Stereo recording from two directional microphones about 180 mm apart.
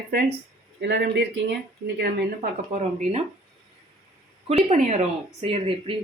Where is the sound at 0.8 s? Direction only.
70° right (ahead or behind).